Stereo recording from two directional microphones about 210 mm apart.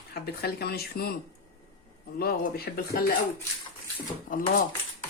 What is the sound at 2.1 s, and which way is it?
Speech, 45° left (ahead or behind).